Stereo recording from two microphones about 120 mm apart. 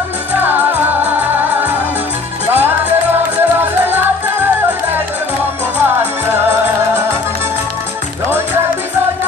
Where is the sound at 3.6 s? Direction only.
15° right (ahead or behind).